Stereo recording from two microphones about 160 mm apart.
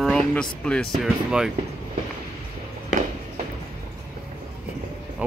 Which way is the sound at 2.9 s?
50° left (ahead or behind).